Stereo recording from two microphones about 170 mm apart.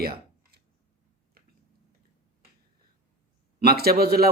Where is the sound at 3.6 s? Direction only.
65° right (ahead or behind).